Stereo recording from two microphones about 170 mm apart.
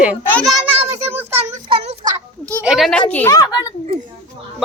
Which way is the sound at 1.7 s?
35° right (ahead or behind).